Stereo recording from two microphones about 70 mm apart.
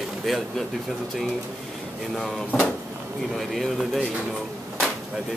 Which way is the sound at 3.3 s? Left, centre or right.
Centre.